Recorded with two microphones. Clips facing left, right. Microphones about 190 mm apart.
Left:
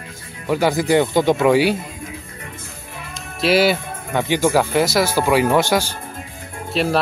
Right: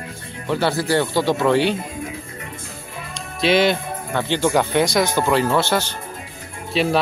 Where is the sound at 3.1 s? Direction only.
5° left (ahead or behind).